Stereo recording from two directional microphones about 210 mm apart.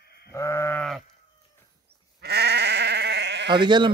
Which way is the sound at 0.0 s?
50° left (ahead or behind).